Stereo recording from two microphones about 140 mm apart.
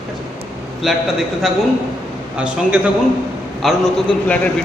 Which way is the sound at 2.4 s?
10° right (ahead or behind).